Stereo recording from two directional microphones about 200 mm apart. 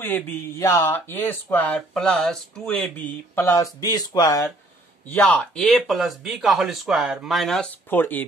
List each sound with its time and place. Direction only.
0.0 s speech: 10° left (ahead or behind)
5.0 s speech: 10° left (ahead or behind)